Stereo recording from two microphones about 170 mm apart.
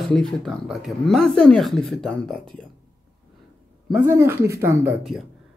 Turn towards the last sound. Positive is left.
turn(degrees=0)  # may be behind; listen again after turning